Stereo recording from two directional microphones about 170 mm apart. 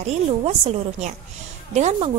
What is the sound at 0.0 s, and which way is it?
A woman's voice, 40° right (ahead or behind).